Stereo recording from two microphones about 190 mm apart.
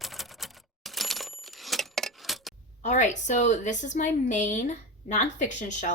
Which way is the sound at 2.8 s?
40° left (ahead or behind).